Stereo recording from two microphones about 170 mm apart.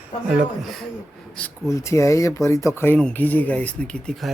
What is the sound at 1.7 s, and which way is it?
Speech, 15° left (ahead or behind).